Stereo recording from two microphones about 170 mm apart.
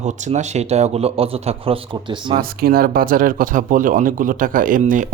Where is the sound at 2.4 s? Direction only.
60° right (ahead or behind).